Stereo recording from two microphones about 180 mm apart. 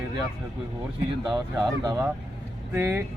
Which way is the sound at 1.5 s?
20° right (ahead or behind).